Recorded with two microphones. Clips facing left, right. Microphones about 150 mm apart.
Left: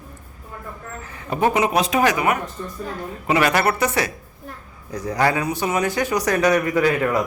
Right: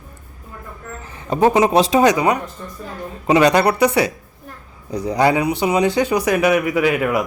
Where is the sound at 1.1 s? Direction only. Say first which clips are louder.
Right 5 dB; 25° right (ahead or behind).